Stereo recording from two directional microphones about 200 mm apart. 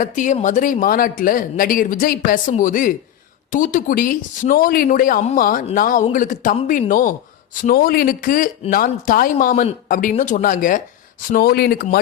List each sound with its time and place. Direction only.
0.0 s speech: 40° left (ahead or behind)